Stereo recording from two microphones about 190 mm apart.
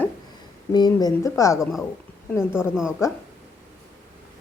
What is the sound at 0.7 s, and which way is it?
Speech, 20° left (ahead or behind).